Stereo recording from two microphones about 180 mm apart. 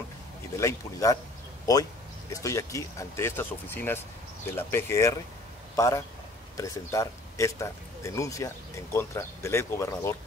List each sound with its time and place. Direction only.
0.6 s speech: 15° left (ahead or behind)
2.3 s speech: 15° left (ahead or behind)